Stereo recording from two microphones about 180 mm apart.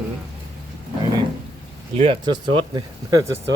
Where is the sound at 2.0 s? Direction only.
25° right (ahead or behind).